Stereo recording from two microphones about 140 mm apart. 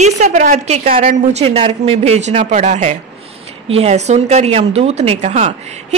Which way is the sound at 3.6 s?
45° right (ahead or behind).